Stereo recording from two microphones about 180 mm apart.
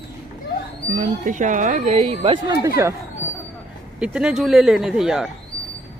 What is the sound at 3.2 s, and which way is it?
Vehicle, 10° right (ahead or behind).